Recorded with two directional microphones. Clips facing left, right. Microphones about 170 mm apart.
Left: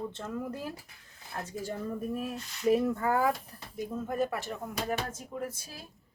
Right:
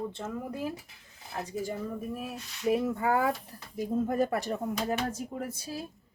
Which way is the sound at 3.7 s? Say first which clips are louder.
Right 4 dB; 35° right (ahead or behind).